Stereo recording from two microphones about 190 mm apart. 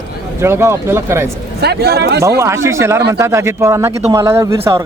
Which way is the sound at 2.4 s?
15° right (ahead or behind).